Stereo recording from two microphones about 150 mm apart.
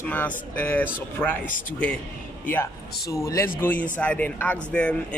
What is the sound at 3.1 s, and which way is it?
Speech, 20° left (ahead or behind).